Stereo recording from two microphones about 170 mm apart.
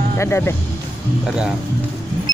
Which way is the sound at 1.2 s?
5° right (ahead or behind).